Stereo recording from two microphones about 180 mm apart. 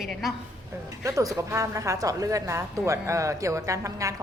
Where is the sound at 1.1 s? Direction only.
20° right (ahead or behind).